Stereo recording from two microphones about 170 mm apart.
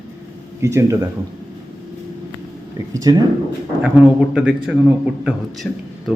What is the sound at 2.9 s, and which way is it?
Speech, 20° right (ahead or behind).